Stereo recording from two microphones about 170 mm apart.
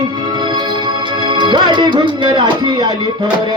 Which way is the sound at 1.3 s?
25° right (ahead or behind).